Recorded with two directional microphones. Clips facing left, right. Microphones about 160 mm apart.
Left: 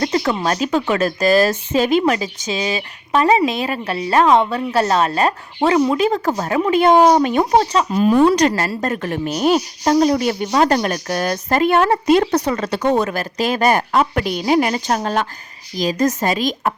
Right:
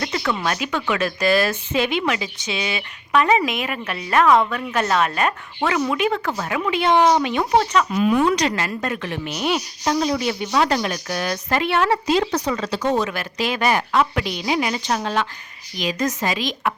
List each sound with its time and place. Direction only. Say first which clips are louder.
0.0 s a woman's voice: left 5 dB; 35° left (ahead or behind)